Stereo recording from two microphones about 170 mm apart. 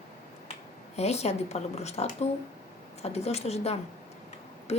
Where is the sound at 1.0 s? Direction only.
40° left (ahead or behind).